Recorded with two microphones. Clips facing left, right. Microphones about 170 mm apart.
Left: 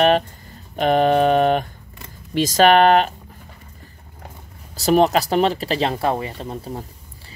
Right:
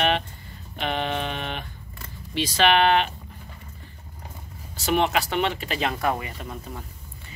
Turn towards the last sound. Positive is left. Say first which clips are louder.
# left 6 dB
turn(degrees=35)  # may be behind; listen again after turning